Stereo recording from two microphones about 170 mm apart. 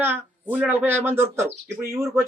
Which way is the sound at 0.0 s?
10° right (ahead or behind).